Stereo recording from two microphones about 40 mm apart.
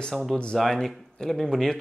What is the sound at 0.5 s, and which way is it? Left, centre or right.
Speech, centre.